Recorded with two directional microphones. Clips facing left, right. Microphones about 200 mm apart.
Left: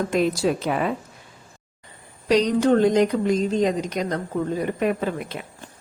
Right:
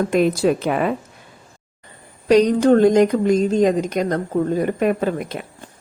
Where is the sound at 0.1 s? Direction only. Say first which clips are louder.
Right 4 dB; 55° right (ahead or behind).